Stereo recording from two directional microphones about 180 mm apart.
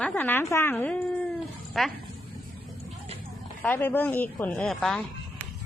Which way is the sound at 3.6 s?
10° left (ahead or behind).